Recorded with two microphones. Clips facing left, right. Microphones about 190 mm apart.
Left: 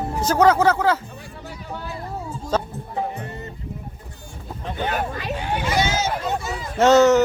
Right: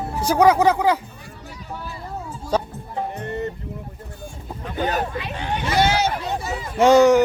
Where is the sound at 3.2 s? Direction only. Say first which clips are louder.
Right 8 dB; 65° right (ahead or behind).